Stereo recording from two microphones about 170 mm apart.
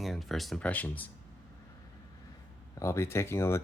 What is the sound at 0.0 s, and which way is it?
Speech, centre (ahead or behind).